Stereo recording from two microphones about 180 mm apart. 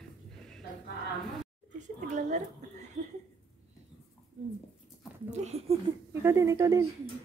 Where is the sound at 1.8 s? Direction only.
45° right (ahead or behind).